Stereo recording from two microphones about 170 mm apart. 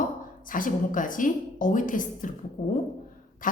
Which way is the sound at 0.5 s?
50° left (ahead or behind).